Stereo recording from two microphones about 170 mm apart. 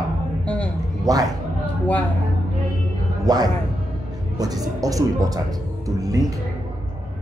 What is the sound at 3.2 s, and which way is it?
Speech, 20° right (ahead or behind).